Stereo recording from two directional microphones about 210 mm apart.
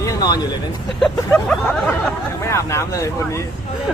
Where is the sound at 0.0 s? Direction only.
15° left (ahead or behind).